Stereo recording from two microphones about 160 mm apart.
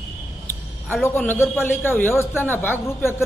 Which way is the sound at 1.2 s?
15° left (ahead or behind).